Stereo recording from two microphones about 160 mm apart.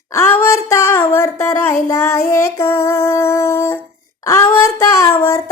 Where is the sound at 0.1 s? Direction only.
15° left (ahead or behind).